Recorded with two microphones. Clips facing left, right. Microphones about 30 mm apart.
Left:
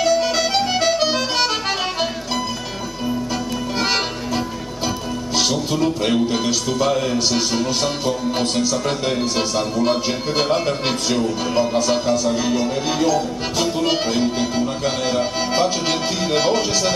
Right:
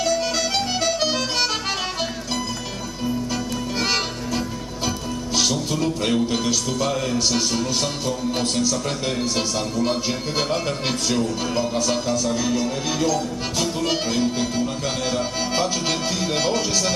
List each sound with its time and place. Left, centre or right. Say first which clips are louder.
0.0 s music: left 4 dB; centre
5.3 s music: left 2 dB; centre